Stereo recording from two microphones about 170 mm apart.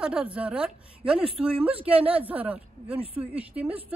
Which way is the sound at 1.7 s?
35° right (ahead or behind).